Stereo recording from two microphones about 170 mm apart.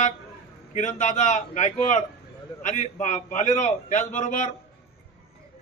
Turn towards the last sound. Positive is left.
turn(degrees=45)  # may be behind; listen again after turning